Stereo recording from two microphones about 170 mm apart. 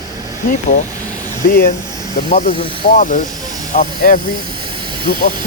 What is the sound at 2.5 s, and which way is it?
Speech, 30° left (ahead or behind).